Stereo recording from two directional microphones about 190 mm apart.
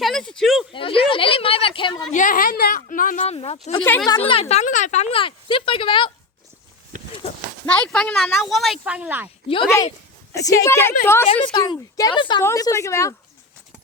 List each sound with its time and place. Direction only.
0.0 s speech: centre (ahead or behind)
0.7 s speech: 30° left (ahead or behind)
2.1 s a woman's voice: 45° left (ahead or behind)
3.3 s speech: 30° left (ahead or behind)
3.8 s a woman's voice: 10° left (ahead or behind)
4.1 s speech: 30° left (ahead or behind)
7.6 s speech: 5° left (ahead or behind); by 9.3 s 10° right (ahead or behind)
9.6 s a woman's voice: 15° left (ahead or behind)
11.3 s a woman's voice: 25° left (ahead or behind)